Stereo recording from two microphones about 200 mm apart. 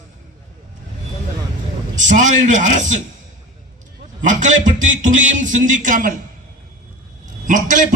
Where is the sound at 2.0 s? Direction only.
40° right (ahead or behind).